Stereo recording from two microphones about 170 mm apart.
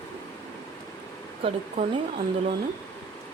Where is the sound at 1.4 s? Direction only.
35° right (ahead or behind).